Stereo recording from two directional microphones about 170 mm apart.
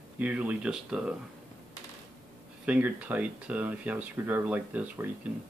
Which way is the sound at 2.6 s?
5° right (ahead or behind).